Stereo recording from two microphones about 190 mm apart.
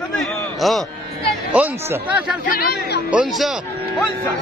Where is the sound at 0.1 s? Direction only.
Centre (ahead or behind).